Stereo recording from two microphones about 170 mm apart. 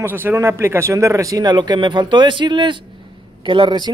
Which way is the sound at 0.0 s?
10° right (ahead or behind).